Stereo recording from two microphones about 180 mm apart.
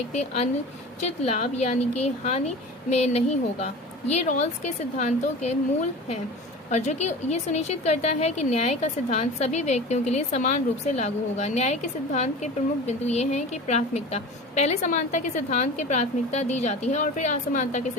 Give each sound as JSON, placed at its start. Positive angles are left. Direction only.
{"t": 0.1, "sound": "a woman's voice", "side_deg": 40}
{"t": 6.7, "sound": "a woman's voice", "side_deg": 40}